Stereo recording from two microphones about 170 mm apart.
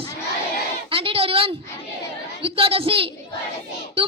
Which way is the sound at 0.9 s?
30° right (ahead or behind).